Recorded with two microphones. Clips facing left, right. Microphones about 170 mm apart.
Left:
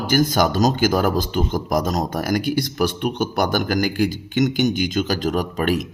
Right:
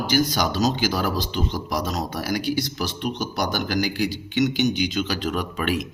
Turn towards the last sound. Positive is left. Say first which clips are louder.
# left 4 dB
turn(degrees=40)  # may be behind; listen again after turning